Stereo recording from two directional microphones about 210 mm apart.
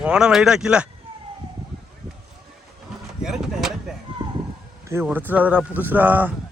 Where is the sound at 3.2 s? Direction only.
Centre (ahead or behind).